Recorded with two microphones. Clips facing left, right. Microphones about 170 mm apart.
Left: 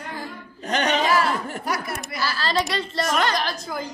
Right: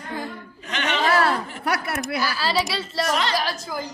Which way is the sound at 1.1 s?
65° right (ahead or behind).